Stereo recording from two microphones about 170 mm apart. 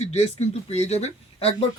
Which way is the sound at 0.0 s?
40° left (ahead or behind).